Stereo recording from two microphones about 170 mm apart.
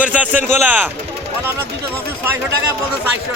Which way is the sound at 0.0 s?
10° right (ahead or behind).